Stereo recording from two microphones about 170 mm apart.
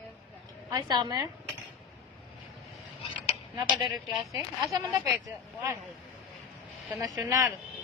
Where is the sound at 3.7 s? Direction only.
25° right (ahead or behind).